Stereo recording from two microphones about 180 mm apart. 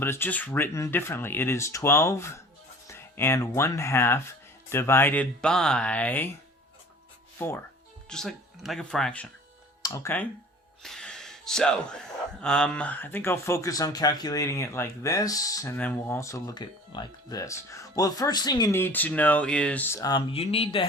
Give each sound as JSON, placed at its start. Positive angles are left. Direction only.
{"t": 0.0, "sound": "speech", "side_deg": 10}
{"t": 7.3, "sound": "speech", "side_deg": 15}
{"t": 8.1, "sound": "speech", "side_deg": 0}
{"t": 9.8, "sound": "speech", "side_deg": 15}
{"t": 10.8, "sound": "a sound", "side_deg": 5}
{"t": 12.4, "sound": "speech", "side_deg": 5}
{"t": 20.3, "sound": "speech", "side_deg": 35}